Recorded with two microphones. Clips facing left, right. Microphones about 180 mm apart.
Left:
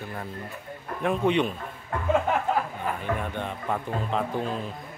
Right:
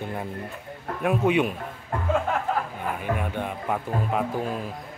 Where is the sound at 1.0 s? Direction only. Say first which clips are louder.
Right 1 dB; 5° right (ahead or behind).